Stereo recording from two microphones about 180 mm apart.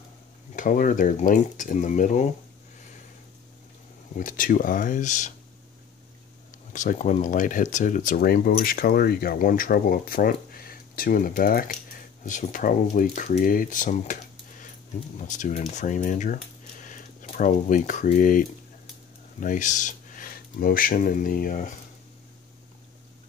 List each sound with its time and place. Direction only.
0.6 s speech: 45° left (ahead or behind)
4.2 s speech: 50° left (ahead or behind)
6.7 s speech: 45° left (ahead or behind)
19.4 s speech: 45° left (ahead or behind)